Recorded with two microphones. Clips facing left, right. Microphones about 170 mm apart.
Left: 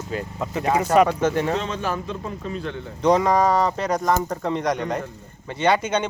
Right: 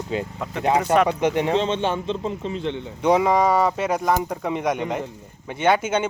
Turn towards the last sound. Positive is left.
turn(degrees=-5)  # may be behind; listen again after turning